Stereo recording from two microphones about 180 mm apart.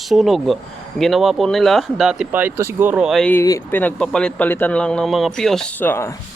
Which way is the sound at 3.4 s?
15° left (ahead or behind).